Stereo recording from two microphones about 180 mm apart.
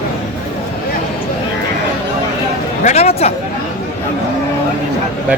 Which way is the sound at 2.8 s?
35° left (ahead or behind).